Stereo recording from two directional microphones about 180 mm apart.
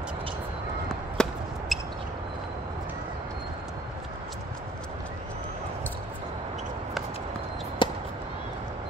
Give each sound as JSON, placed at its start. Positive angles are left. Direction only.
{"t": 1.2, "sound": "basketball bounce", "side_deg": 5}
{"t": 1.7, "sound": "a sound", "side_deg": 0}
{"t": 7.8, "sound": "chop", "side_deg": 25}